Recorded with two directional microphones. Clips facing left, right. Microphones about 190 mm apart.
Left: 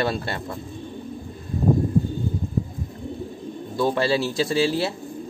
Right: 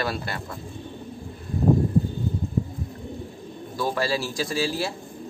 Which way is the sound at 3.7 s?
25° left (ahead or behind).